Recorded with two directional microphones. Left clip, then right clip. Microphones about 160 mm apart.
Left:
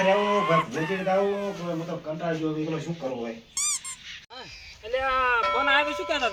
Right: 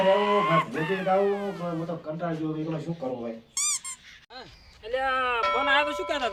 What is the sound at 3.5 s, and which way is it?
Squeak, centre (ahead or behind).